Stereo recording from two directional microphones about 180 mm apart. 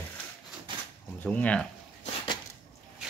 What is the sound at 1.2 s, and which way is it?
Speech, 10° left (ahead or behind).